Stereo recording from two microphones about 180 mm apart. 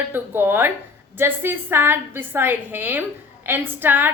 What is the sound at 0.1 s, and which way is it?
A woman's voice, 10° right (ahead or behind).